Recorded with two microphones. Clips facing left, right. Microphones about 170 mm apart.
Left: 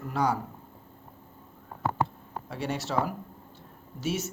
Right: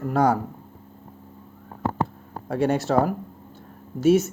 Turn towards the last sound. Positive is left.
turn(degrees=-50)  # may be behind; listen again after turning